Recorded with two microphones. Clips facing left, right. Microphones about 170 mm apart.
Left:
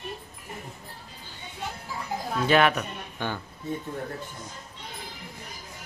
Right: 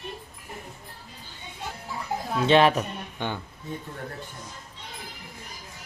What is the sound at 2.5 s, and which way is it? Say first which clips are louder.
Speech: right 3 dB; 30° right (ahead or behind).